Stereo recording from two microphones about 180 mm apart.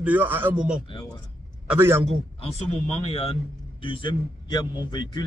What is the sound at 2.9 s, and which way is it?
A man's voice, 35° left (ahead or behind).